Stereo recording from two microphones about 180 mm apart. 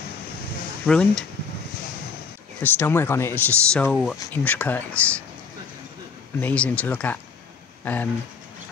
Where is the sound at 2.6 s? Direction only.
10° left (ahead or behind).